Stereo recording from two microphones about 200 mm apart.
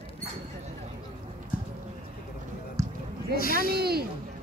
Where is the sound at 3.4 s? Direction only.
45° left (ahead or behind).